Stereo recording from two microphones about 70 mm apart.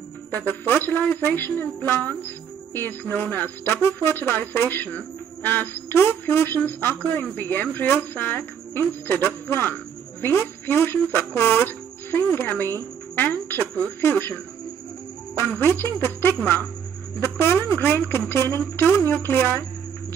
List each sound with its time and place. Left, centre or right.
0.5 s a woman's voice: left
15.6 s speech: left